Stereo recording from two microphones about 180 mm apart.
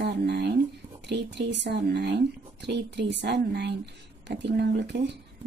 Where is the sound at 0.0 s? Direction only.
70° right (ahead or behind).